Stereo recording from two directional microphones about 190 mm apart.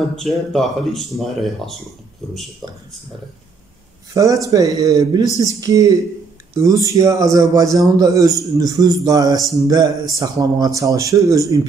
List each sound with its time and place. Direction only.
0.1 s speech: centre (ahead or behind)
4.1 s a man's voice: 15° right (ahead or behind)